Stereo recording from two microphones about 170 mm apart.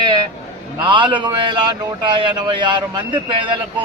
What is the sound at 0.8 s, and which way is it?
A man's voice, 30° right (ahead or behind).